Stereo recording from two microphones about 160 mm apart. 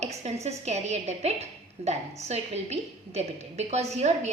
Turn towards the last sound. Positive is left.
turn(degrees=-45)  # may be behind; listen again after turning